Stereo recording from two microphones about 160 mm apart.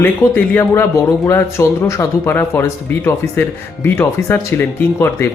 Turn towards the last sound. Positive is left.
turn(degrees=15)  # may be behind; listen again after turning